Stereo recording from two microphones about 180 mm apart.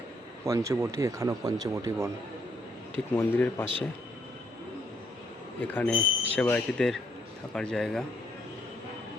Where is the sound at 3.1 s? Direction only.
15° left (ahead or behind).